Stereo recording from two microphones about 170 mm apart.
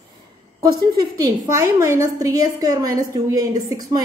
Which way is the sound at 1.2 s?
20° right (ahead or behind).